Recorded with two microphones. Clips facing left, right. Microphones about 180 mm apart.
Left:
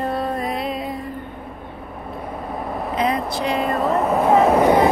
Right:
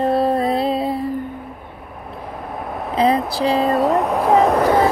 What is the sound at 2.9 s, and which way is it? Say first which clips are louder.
Speech: right 5 dB; 35° right (ahead or behind).